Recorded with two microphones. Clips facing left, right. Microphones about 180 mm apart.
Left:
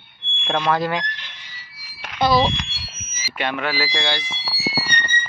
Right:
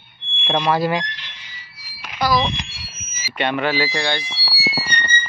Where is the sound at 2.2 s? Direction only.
30° left (ahead or behind).